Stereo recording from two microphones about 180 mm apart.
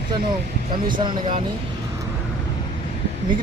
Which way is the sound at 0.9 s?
25° right (ahead or behind).